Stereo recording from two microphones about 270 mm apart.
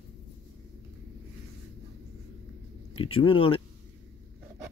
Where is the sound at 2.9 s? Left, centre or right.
Centre.